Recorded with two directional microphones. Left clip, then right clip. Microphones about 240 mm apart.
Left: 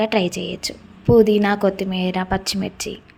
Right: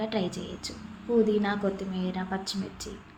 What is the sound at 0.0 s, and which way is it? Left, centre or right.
A woman's voice, left.